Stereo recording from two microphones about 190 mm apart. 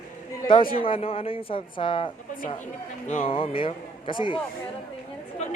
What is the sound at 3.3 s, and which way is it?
A man's voice, 30° left (ahead or behind).